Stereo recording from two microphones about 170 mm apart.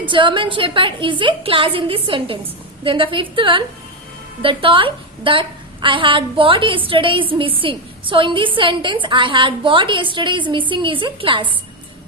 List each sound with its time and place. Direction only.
0.1 s a woman's voice: 30° right (ahead or behind)